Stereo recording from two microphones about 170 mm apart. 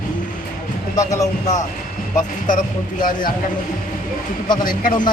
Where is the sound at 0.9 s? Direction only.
20° left (ahead or behind).